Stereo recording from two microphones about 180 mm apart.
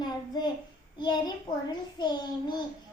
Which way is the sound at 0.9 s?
25° left (ahead or behind).